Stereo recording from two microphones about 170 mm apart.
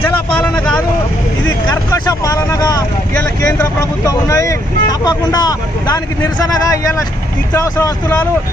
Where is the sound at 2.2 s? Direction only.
20° left (ahead or behind).